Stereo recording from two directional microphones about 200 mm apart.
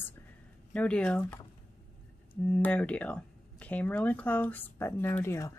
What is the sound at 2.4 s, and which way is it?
Speech, 5° left (ahead or behind).